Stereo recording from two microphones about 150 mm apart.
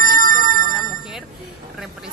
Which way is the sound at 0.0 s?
70° right (ahead or behind).